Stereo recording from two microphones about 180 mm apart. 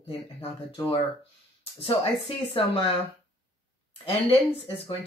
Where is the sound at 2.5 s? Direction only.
30° left (ahead or behind).